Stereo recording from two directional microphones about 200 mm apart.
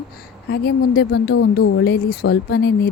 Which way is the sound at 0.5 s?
55° left (ahead or behind).